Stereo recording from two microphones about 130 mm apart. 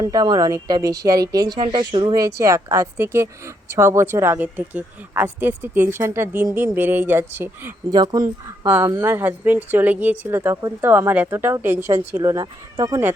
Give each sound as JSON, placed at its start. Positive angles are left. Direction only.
{"t": 0.0, "sound": "speech", "side_deg": -30}
{"t": 7.9, "sound": "speech", "side_deg": -30}